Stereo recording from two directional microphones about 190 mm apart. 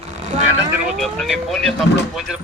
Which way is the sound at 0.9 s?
Centre (ahead or behind).